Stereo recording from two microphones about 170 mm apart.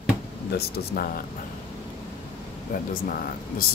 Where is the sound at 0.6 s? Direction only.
65° left (ahead or behind).